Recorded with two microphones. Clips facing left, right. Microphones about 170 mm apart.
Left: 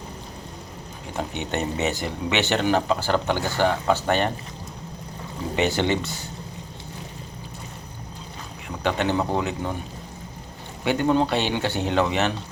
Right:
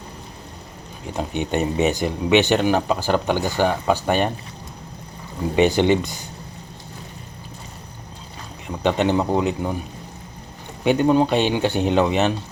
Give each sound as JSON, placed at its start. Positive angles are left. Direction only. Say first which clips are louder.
{"t": 1.1, "sound": "speech", "louder": "right 4 dB", "side_deg": -15}
{"t": 5.5, "sound": "speech", "louder": "right 6 dB", "side_deg": -15}
{"t": 8.8, "sound": "speech", "louder": "right 4 dB", "side_deg": -20}
{"t": 10.8, "sound": "speech", "louder": "right 4 dB", "side_deg": -15}